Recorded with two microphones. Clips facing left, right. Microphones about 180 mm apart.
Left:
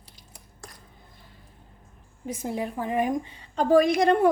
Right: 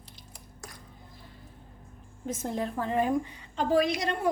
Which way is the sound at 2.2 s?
10° left (ahead or behind).